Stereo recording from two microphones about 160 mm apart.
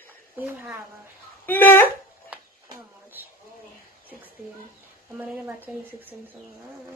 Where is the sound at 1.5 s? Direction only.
10° left (ahead or behind).